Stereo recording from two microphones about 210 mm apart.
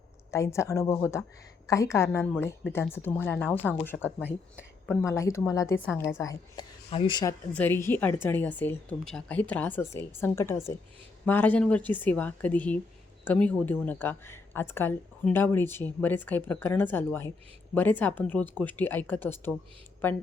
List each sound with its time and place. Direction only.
0.3 s speech: 15° left (ahead or behind)
7.5 s speech: 10° left (ahead or behind)